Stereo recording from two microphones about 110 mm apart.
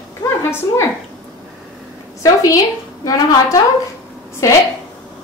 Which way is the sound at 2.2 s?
30° left (ahead or behind).